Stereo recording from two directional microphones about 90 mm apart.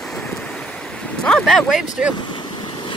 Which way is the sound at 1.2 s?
5° left (ahead or behind).